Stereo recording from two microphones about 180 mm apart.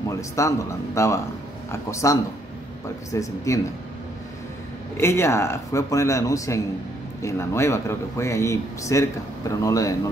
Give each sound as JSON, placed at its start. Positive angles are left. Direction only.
{"t": 0.1, "sound": "speech", "side_deg": 15}
{"t": 4.9, "sound": "speech", "side_deg": 15}